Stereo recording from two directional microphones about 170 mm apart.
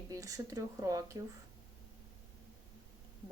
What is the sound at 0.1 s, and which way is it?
A woman's voice, 20° right (ahead or behind).